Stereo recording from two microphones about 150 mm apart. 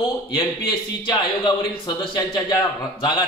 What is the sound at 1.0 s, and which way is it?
A man's voice, 30° left (ahead or behind).